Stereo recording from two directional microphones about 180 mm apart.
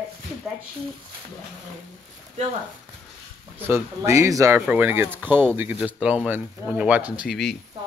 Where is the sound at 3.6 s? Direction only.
15° right (ahead or behind).